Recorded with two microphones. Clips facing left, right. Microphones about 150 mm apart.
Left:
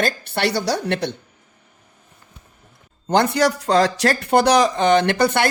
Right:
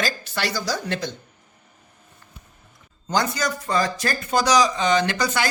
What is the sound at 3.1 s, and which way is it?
Speech, 65° left (ahead or behind).